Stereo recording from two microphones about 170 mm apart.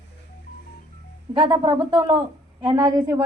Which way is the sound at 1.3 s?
30° right (ahead or behind).